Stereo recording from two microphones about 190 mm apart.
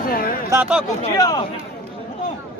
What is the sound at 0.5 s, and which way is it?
Speech, 5° right (ahead or behind).